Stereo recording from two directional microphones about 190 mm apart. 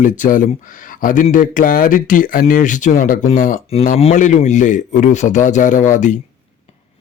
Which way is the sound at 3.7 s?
35° left (ahead or behind).